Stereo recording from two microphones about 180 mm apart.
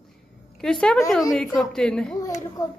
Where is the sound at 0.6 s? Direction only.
5° left (ahead or behind).